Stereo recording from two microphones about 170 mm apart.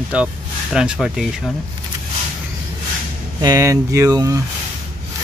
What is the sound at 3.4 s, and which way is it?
Speech, 20° right (ahead or behind).